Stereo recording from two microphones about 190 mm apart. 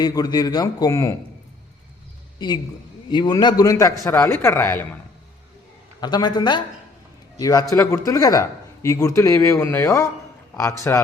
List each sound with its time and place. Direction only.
0.0 s speech: 20° left (ahead or behind)
3.1 s speech: 20° left (ahead or behind)
6.0 s a man's voice: 20° left (ahead or behind)